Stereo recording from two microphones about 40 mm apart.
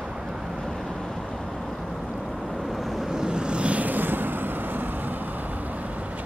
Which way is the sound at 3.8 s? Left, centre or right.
Right.